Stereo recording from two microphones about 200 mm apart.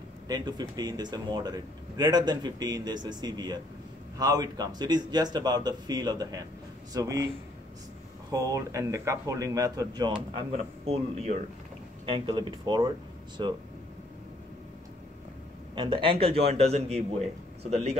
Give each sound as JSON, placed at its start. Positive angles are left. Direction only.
{"t": 0.3, "sound": "speech", "side_deg": -20}
{"t": 8.3, "sound": "speech", "side_deg": -15}
{"t": 10.3, "sound": "a man's voice", "side_deg": -30}
{"t": 15.7, "sound": "speech", "side_deg": -25}